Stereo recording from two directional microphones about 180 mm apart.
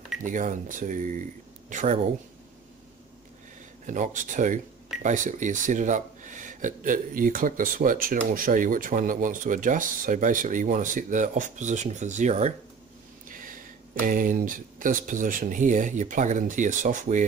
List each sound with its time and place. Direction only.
0.2 s speech: 45° right (ahead or behind)
3.8 s speech: 45° right (ahead or behind)
13.3 s a sound: 50° right (ahead or behind)
14.0 s speech: 50° right (ahead or behind)